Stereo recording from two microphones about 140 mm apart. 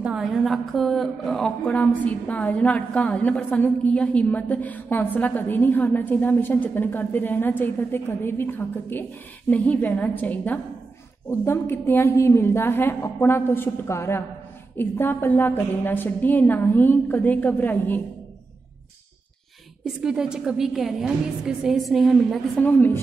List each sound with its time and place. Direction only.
0.0 s a woman's voice: 5° right (ahead or behind); by 18.0 s 10° left (ahead or behind)
20.0 s a woman's voice: 5° right (ahead or behind)
22.6 s a woman's voice: 15° left (ahead or behind)